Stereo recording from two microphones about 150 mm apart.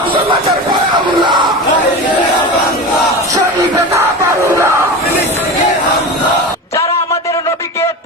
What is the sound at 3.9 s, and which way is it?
Crowd, 15° right (ahead or behind).